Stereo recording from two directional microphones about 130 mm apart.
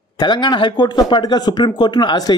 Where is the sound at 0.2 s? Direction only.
35° left (ahead or behind).